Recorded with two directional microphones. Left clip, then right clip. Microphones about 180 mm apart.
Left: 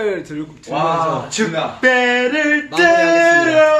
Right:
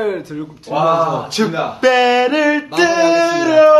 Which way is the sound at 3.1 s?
55° right (ahead or behind).